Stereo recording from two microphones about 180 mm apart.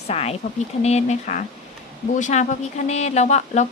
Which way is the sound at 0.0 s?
35° left (ahead or behind).